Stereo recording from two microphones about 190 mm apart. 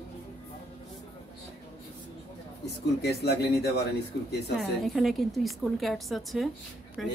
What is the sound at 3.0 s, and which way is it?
Speech, 60° left (ahead or behind).